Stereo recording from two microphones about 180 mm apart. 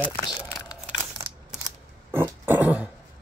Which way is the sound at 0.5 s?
15° left (ahead or behind).